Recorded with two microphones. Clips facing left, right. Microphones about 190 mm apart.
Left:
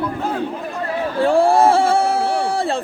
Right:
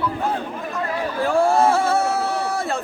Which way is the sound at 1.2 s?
30° left (ahead or behind).